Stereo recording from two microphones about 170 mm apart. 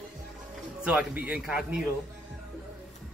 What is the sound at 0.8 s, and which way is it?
Speech, 10° right (ahead or behind).